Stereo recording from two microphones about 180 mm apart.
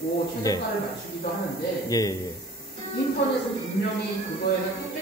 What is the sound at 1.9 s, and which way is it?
Speech, 20° left (ahead or behind).